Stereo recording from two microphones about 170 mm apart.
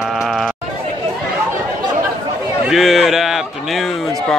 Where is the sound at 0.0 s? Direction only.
Centre (ahead or behind).